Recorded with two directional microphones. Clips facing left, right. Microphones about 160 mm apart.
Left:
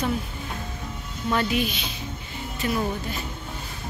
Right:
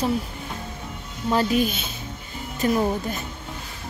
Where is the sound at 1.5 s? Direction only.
45° right (ahead or behind).